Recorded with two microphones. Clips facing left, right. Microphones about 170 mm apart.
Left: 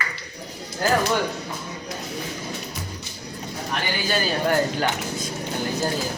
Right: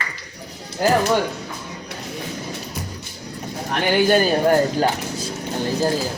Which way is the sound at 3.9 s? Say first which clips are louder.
Right 11 dB; 60° right (ahead or behind).